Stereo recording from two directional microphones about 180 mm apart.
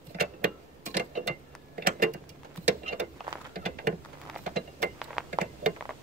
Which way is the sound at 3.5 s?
55° right (ahead or behind).